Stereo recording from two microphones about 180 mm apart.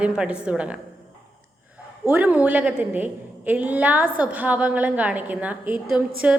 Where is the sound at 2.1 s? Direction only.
10° right (ahead or behind).